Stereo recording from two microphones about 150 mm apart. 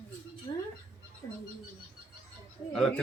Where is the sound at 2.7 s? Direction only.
5° left (ahead or behind).